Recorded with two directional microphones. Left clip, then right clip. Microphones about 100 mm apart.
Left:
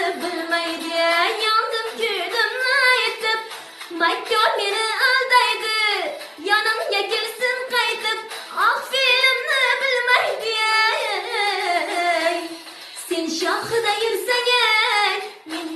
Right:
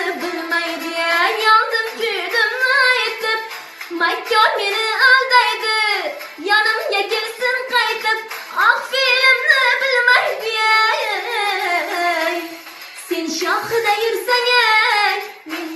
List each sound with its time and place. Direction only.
0.2 s music: 30° left (ahead or behind)
2.0 s singing: 30° left (ahead or behind)
3.9 s child singing: 30° left (ahead or behind)
6.4 s a sound: 30° left (ahead or behind)
8.5 s child singing: 30° left (ahead or behind)